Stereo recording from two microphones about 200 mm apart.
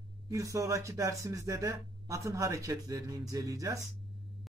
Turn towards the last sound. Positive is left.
turn(degrees=-15)  # may be behind; listen again after turning